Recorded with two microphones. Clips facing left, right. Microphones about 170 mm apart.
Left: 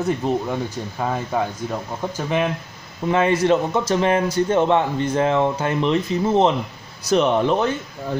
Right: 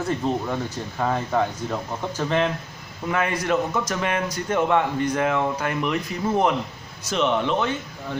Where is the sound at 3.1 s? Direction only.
25° left (ahead or behind).